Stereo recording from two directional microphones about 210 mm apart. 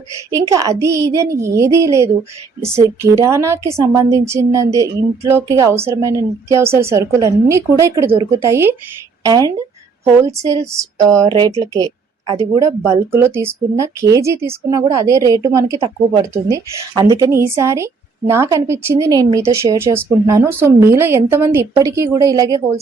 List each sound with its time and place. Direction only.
0.5 s speech: 15° right (ahead or behind)
10.7 s speech: 15° right (ahead or behind)